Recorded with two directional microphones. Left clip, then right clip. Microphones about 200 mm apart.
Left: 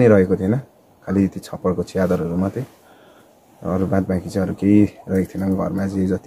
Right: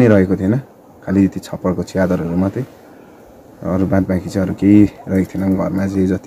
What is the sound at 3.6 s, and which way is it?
Speech, 5° left (ahead or behind).